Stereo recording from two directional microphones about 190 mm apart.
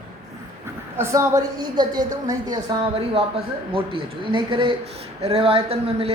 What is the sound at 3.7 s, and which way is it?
A man's voice, 30° right (ahead or behind).